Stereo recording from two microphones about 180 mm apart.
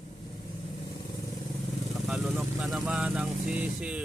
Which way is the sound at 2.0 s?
5° right (ahead or behind).